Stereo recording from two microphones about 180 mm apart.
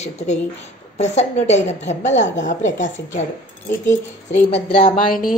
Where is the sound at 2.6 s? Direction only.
90° left.